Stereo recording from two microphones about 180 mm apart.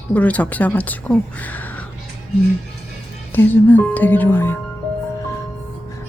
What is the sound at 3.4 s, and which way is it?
Speech, 10° left (ahead or behind).